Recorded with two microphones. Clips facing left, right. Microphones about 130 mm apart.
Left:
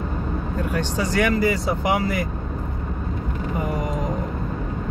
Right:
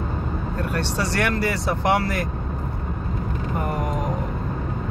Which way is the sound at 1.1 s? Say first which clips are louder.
Left 4 dB; 10° left (ahead or behind).